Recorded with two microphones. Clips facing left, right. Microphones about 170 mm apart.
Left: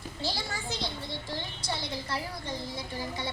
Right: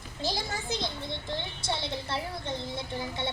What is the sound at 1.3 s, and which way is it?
A child's voice, 25° right (ahead or behind).